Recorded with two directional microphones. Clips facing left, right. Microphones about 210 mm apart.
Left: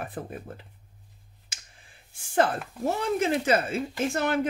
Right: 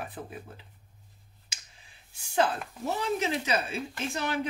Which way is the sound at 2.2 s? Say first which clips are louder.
Left 3 dB; 50° left (ahead or behind).